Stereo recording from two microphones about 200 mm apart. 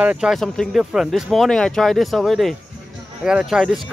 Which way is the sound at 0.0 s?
5° right (ahead or behind).